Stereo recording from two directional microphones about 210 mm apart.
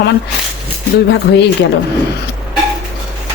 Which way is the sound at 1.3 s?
55° left (ahead or behind).